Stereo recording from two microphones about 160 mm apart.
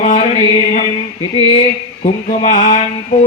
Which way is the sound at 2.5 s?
50° left (ahead or behind).